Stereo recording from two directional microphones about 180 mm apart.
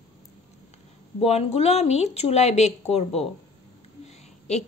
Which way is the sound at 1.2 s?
35° left (ahead or behind).